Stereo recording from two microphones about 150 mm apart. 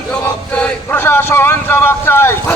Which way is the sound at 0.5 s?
10° left (ahead or behind).